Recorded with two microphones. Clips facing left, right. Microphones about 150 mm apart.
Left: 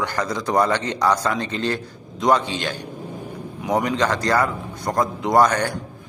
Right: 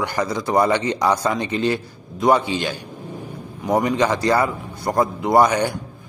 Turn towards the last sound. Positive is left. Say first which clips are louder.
# right 1 dB
turn(degrees=-10)  # may be behind; listen again after turning